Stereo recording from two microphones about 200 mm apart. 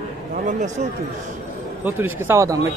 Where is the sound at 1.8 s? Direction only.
10° right (ahead or behind).